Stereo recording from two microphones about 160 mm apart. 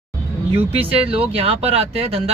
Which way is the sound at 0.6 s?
35° right (ahead or behind).